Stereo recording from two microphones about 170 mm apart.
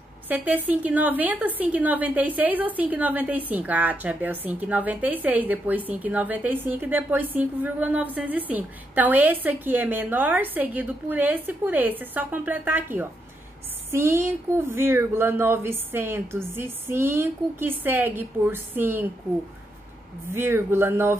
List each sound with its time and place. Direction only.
0.3 s a woman's voice: 10° right (ahead or behind)
20.3 s a woman's voice: 15° right (ahead or behind)